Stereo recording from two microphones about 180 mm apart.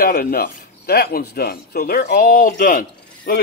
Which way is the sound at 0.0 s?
55° left (ahead or behind).